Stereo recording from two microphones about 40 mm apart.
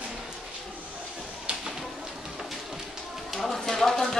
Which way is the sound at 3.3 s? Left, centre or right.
Centre.